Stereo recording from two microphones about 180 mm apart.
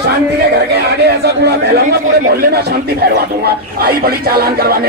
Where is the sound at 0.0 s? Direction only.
65° right (ahead or behind).